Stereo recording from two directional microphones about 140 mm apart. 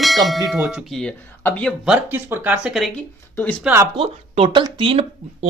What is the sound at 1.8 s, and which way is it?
A man's voice, 5° right (ahead or behind).